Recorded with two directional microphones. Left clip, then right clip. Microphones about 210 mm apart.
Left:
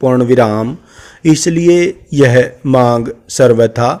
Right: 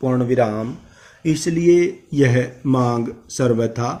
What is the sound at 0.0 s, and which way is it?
A man's voice, 50° left (ahead or behind).